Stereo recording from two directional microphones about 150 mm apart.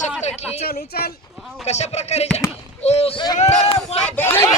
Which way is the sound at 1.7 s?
45° left (ahead or behind).